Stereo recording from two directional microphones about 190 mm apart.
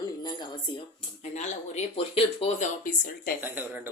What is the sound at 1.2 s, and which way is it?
Speech, 35° left (ahead or behind).